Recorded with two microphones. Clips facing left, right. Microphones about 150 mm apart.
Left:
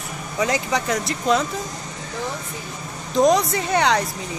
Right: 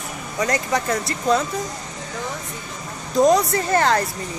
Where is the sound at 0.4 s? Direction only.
Centre (ahead or behind).